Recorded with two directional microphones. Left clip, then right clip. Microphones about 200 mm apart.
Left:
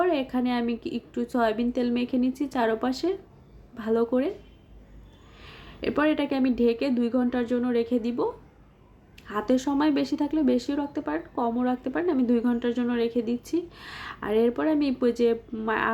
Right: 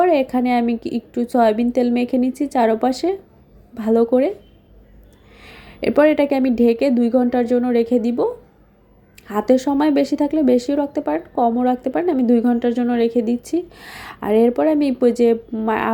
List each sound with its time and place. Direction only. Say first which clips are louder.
0.0 s speech: right 9 dB; 25° right (ahead or behind)
5.4 s speech: right 9 dB; 25° right (ahead or behind)